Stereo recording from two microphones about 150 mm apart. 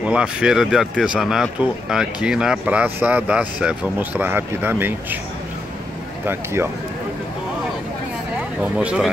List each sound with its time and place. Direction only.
0.0 s speech: 5° right (ahead or behind)
6.2 s speech: 15° right (ahead or behind)
8.7 s speech: 5° right (ahead or behind)